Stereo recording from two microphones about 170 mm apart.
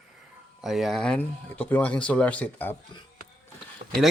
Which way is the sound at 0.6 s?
Centre (ahead or behind).